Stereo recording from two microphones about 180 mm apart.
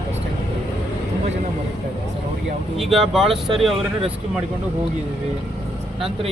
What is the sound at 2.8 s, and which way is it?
Speech, centre (ahead or behind).